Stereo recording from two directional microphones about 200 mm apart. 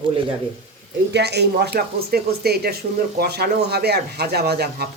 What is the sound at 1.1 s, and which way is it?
Speech, 55° right (ahead or behind).